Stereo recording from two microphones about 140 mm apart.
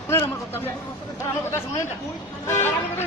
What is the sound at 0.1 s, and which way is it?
Speech, 20° left (ahead or behind).